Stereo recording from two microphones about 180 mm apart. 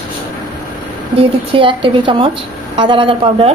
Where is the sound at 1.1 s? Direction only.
30° right (ahead or behind).